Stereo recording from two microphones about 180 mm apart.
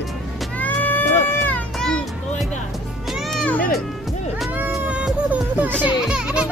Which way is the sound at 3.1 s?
Centre (ahead or behind).